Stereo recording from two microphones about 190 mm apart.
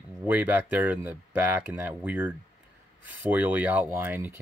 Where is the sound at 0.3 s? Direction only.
10° right (ahead or behind).